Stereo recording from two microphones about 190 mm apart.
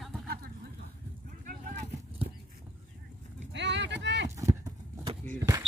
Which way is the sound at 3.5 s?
65° right (ahead or behind).